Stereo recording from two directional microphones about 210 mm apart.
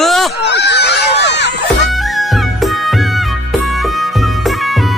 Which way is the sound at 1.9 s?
Centre (ahead or behind).